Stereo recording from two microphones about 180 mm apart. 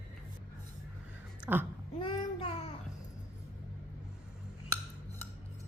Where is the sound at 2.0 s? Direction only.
30° left (ahead or behind).